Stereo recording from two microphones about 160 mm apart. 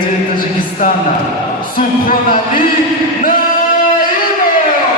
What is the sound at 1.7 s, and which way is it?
Speech, 60° left (ahead or behind).